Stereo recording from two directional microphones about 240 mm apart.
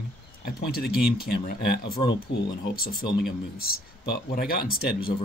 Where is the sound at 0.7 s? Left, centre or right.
Left.